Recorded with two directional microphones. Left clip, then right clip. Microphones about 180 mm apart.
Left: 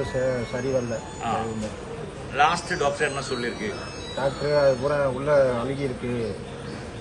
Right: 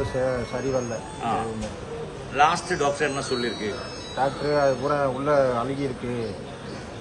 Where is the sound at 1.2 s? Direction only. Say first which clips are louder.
Right 1 dB; 30° right (ahead or behind).